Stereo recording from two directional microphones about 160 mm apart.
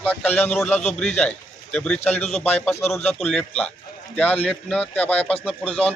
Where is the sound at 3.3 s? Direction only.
5° left (ahead or behind).